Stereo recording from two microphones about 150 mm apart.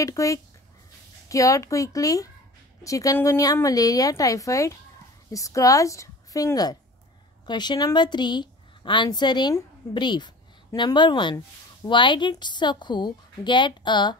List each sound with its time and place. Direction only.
0.0 s a woman's voice: 20° left (ahead or behind)